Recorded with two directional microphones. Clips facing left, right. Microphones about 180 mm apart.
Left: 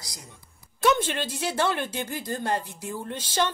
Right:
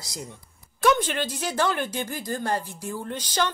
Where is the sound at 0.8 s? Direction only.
25° left (ahead or behind).